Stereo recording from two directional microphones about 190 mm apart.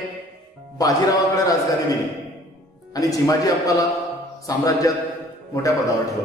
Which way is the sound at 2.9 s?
20° left (ahead or behind).